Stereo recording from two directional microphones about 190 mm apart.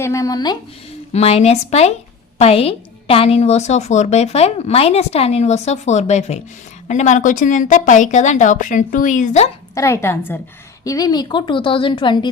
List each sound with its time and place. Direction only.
0.0 s a woman's voice: 15° left (ahead or behind)
1.1 s a woman's voice: 35° left (ahead or behind)
9.7 s a woman's voice: 15° left (ahead or behind)